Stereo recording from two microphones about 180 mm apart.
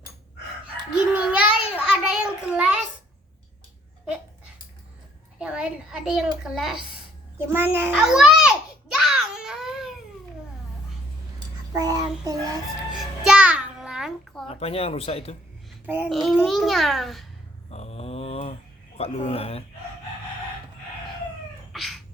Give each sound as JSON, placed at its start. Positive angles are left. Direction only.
{"t": 0.9, "sound": "child singing", "side_deg": -5}
{"t": 5.4, "sound": "a child's voice", "side_deg": -5}
{"t": 7.3, "sound": "a sound", "side_deg": -10}
{"t": 11.8, "sound": "child singing", "side_deg": -20}
{"t": 12.9, "sound": "music", "side_deg": -5}
{"t": 14.4, "sound": "speech", "side_deg": 35}
{"t": 15.9, "sound": "a child's voice", "side_deg": -5}
{"t": 17.7, "sound": "a sound", "side_deg": 35}
{"t": 18.9, "sound": "speech", "side_deg": 35}
{"t": 21.7, "sound": "a sound", "side_deg": 0}